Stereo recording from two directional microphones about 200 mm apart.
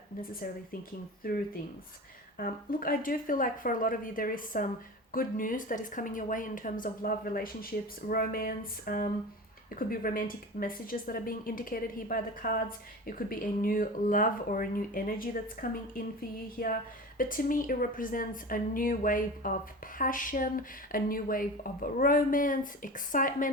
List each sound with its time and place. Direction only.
0.2 s speech: 45° left (ahead or behind)
2.4 s speech: 45° left (ahead or behind)